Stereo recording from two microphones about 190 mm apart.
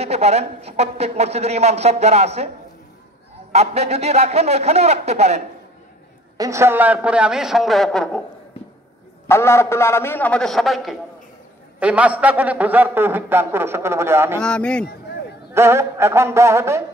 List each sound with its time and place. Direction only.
0.0 s a woman's voice: 35° right (ahead or behind)
3.5 s a woman's voice: 35° right (ahead or behind)
6.3 s a man's voice: 15° right (ahead or behind); by 8.2 s 5° left (ahead or behind)
9.3 s a man's voice: 15° left (ahead or behind); by 14.4 s 10° right (ahead or behind)
14.4 s a man's voice: 5° left (ahead or behind)
15.5 s a man's voice: 15° right (ahead or behind)